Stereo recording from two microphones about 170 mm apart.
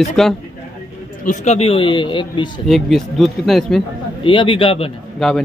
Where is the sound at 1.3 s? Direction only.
40° left (ahead or behind).